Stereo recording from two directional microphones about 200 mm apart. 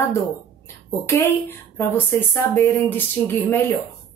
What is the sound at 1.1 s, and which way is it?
Speech, 10° left (ahead or behind).